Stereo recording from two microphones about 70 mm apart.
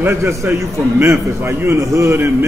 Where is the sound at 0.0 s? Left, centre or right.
Right.